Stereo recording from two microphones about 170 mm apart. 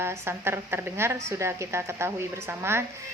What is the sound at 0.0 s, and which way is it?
A woman's voice, 15° right (ahead or behind).